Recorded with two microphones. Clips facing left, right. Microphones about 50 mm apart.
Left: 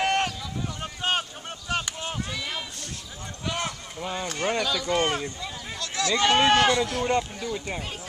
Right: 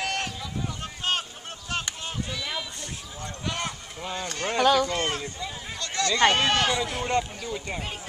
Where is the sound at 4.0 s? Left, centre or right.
Centre.